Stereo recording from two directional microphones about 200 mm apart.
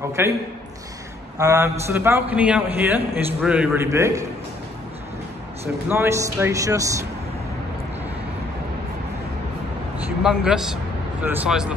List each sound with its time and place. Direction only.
0.2 s a man's voice: 10° right (ahead or behind)
1.4 s a man's voice: 15° right (ahead or behind)
5.9 s a man's voice: 15° right (ahead or behind)
10.2 s a man's voice: 5° right (ahead or behind)